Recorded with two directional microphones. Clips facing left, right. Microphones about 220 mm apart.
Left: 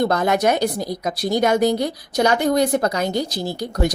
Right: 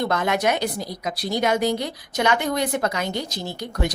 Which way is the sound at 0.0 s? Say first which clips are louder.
Left 4 dB; 40° left (ahead or behind).